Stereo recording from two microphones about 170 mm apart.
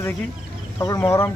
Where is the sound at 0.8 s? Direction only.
20° left (ahead or behind).